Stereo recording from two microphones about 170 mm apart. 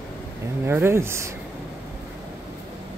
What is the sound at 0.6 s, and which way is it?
Speech, 15° right (ahead or behind).